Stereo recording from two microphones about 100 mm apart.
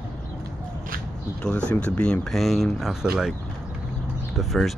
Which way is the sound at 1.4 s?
10° left (ahead or behind).